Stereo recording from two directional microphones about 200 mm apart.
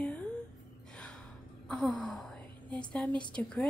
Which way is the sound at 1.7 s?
5° left (ahead or behind).